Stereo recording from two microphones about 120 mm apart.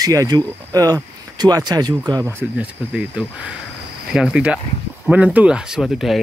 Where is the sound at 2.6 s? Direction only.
10° right (ahead or behind).